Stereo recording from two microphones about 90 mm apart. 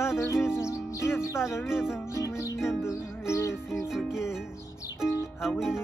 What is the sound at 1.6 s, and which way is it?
Music, 5° right (ahead or behind).